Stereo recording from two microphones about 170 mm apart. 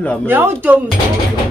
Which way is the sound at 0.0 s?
5° left (ahead or behind).